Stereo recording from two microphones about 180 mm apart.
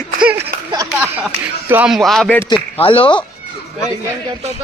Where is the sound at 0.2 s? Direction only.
10° right (ahead or behind).